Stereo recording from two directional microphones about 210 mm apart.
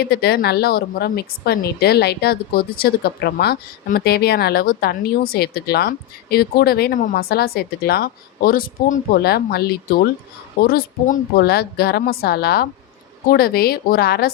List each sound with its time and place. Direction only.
0.0 s a woman's voice: 50° left (ahead or behind)